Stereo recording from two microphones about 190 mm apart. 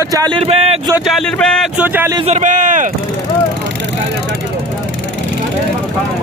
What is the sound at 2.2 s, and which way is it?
Speech, 40° right (ahead or behind).